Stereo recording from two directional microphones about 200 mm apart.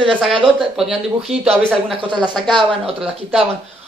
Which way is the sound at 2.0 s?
25° right (ahead or behind).